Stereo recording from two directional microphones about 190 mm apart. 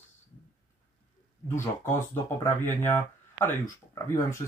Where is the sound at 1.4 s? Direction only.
15° left (ahead or behind).